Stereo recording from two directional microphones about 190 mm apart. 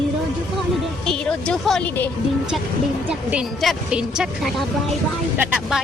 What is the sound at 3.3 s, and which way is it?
A woman's voice, centre (ahead or behind).